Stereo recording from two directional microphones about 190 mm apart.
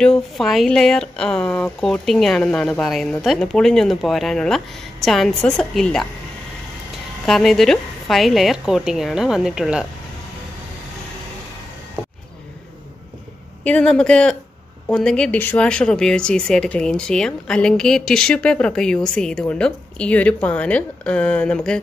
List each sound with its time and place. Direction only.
0.0 s a woman's voice: 5° left (ahead or behind)
7.2 s a woman's voice: centre (ahead or behind)
13.7 s a woman's voice: 5° left (ahead or behind)